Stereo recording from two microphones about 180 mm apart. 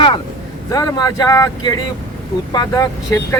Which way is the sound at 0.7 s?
20° left (ahead or behind).